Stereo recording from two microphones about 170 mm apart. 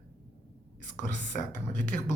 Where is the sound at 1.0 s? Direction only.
45° left (ahead or behind).